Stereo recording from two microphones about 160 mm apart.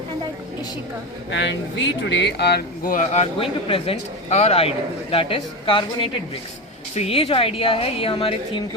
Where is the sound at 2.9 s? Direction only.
45° left (ahead or behind).